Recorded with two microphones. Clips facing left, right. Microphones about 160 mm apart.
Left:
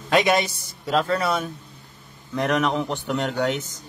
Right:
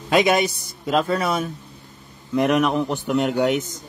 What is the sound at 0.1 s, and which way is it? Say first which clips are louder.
A man's voice: right 2 dB; 15° right (ahead or behind).